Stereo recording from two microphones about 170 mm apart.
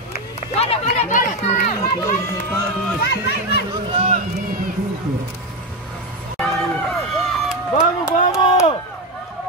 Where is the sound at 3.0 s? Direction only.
70° left (ahead or behind).